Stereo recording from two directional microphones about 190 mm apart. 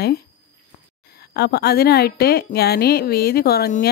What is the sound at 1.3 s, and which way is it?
A woman's voice, 60° left (ahead or behind).